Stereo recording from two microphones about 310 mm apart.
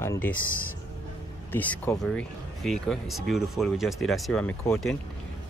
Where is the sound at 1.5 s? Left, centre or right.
Centre.